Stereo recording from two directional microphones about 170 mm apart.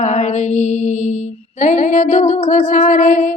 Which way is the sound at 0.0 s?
45° left (ahead or behind).